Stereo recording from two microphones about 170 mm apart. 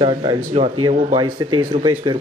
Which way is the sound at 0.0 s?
25° right (ahead or behind).